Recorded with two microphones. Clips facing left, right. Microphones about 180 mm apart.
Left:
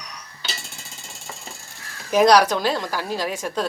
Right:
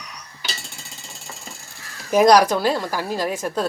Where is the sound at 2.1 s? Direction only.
10° right (ahead or behind).